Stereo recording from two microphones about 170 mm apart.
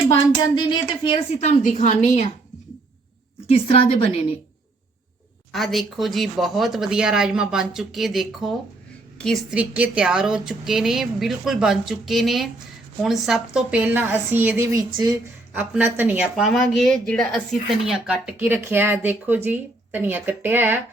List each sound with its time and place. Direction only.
1.4 s a woman's voice: 40° left (ahead or behind)
3.4 s a woman's voice: 35° left (ahead or behind)
5.5 s a woman's voice: centre (ahead or behind)